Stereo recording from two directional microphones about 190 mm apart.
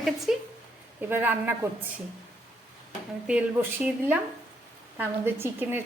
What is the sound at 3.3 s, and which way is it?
A woman's voice, 5° right (ahead or behind).